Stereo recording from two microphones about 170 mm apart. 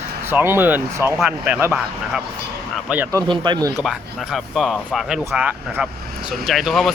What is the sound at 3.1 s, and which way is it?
Speech, 25° right (ahead or behind).